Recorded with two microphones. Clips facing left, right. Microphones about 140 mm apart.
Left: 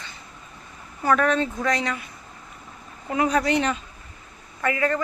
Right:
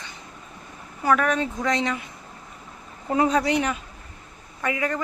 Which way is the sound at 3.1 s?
30° right (ahead or behind).